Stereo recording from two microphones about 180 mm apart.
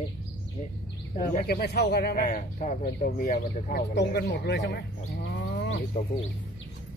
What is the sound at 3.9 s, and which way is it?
Speech, 65° left (ahead or behind).